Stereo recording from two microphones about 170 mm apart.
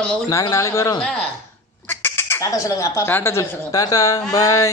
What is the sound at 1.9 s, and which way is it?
Speech, 15° left (ahead or behind).